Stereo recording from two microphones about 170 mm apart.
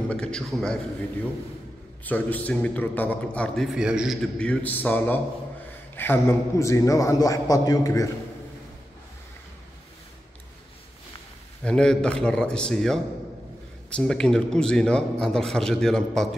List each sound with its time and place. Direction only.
0.1 s a man's voice: 5° left (ahead or behind)
2.0 s a man's voice: 10° left (ahead or behind)
11.6 s a man's voice: 5° left (ahead or behind)